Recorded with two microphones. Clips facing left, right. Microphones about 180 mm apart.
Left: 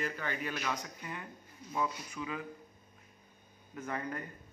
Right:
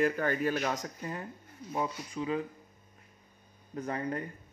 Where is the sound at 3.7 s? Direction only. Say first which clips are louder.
Right 5 dB; 30° right (ahead or behind).